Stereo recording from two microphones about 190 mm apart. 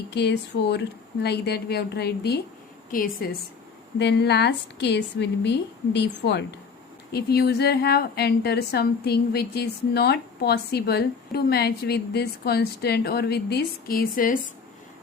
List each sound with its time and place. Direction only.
0.1 s a woman's voice: 60° left (ahead or behind)
2.9 s a woman's voice: 45° left (ahead or behind)
3.9 s a woman's voice: 60° left (ahead or behind)